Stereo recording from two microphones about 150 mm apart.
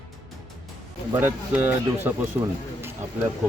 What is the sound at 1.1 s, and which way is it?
Speech, 15° right (ahead or behind).